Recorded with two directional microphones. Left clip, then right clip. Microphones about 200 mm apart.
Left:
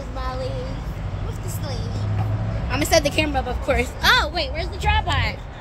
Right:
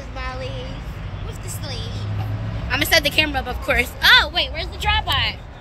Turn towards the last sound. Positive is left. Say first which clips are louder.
# right 2 dB
turn(degrees=10)  # may be behind; listen again after turning